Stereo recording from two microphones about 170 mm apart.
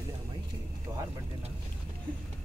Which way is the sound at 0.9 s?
25° right (ahead or behind).